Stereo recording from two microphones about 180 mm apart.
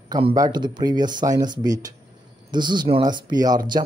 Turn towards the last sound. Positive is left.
turn(degrees=-25)  # may be behind; listen again after turning